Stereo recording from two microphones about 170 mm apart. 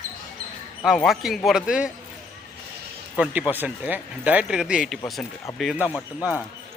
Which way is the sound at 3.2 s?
10° right (ahead or behind).